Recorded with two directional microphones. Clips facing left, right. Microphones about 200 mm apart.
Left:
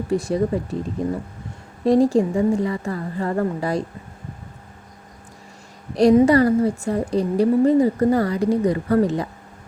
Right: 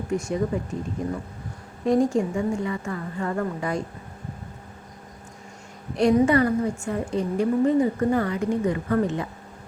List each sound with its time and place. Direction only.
0.1 s a woman's voice: 35° left (ahead or behind)
6.0 s a woman's voice: 35° left (ahead or behind)